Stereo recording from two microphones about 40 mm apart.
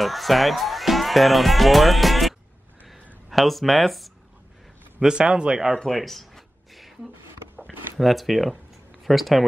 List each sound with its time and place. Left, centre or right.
0.0 s speech: centre
5.0 s a man's voice: right
5.9 s a sound: centre
8.0 s speech: centre